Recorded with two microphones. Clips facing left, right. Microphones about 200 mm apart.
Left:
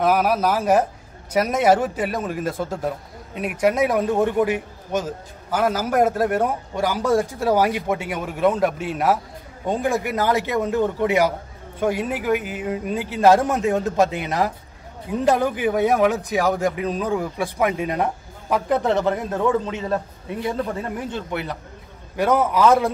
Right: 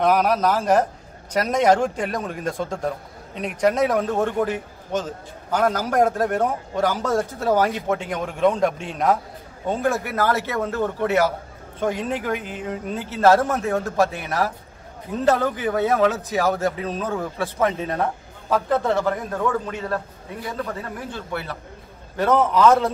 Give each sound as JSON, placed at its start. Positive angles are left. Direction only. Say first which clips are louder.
{"t": 0.0, "sound": "a man's voice", "louder": "even", "side_deg": 5}